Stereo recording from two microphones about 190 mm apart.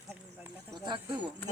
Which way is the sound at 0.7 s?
25° right (ahead or behind).